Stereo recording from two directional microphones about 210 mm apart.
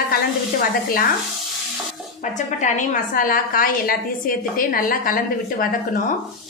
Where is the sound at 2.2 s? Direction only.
35° left (ahead or behind).